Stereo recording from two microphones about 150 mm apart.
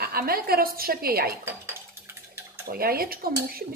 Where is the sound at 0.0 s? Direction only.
80° right.